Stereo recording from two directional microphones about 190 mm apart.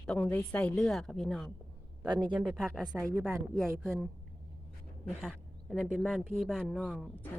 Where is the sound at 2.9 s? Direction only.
15° right (ahead or behind).